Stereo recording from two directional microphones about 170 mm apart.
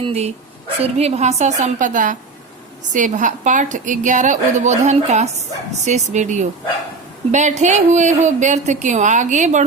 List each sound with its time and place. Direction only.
0.0 s speech: 40° right (ahead or behind)